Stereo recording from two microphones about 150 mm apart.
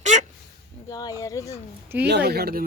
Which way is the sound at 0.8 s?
25° left (ahead or behind).